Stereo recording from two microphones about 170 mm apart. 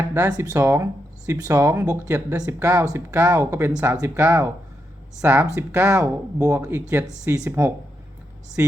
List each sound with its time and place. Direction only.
0.1 s speech: 20° right (ahead or behind)